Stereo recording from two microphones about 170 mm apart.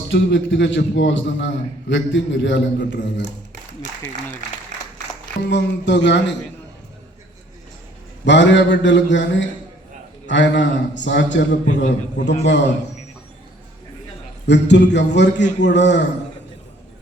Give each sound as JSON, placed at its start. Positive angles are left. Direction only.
{"t": 0.1, "sound": "a man's voice", "side_deg": 90}
{"t": 5.5, "sound": "a man's voice", "side_deg": 90}
{"t": 8.2, "sound": "a man's voice", "side_deg": 90}
{"t": 11.7, "sound": "a man's voice", "side_deg": 45}
{"t": 12.5, "sound": "a man's voice", "side_deg": 90}
{"t": 14.4, "sound": "a man's voice", "side_deg": 90}